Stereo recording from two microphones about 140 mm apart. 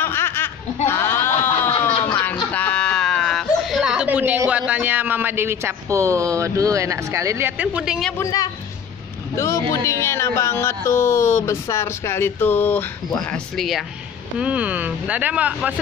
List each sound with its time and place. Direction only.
0.0 s laughter: 15° left (ahead or behind)
0.8 s a sound: 15° left (ahead or behind); by 4.4 s 10° right (ahead or behind)
4.5 s speech: 10° right (ahead or behind)
8.2 s speech: 25° left (ahead or behind)
13.3 s speech: centre (ahead or behind)